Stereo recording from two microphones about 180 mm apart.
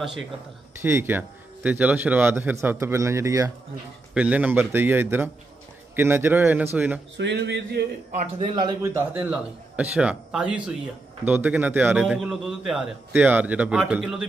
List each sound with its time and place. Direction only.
0.0 s a man's voice: centre (ahead or behind)
7.2 s speech: 75° right (ahead or behind)
8.4 s a man's voice: 25° right (ahead or behind)
8.9 s a man's voice: 10° right (ahead or behind)